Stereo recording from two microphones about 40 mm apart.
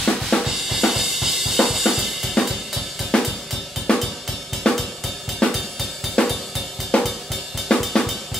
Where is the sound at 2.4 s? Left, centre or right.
Centre.